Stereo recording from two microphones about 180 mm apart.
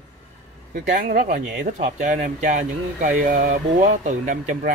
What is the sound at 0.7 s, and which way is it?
Speech, 45° right (ahead or behind).